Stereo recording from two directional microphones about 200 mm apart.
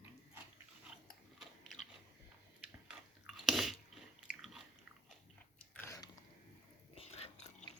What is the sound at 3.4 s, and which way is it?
Chewing, centre (ahead or behind).